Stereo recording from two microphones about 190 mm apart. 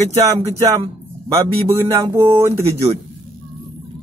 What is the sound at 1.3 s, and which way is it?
Speech, 15° right (ahead or behind).